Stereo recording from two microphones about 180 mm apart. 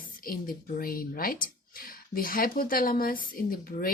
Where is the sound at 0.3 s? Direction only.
55° left (ahead or behind).